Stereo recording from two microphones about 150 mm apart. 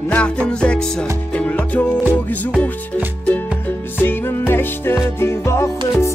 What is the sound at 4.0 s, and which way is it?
Music, 15° left (ahead or behind).